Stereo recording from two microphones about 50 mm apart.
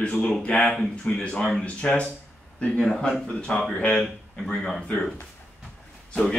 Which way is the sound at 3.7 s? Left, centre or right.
Left.